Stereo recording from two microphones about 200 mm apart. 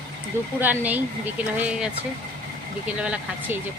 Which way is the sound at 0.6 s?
10° right (ahead or behind).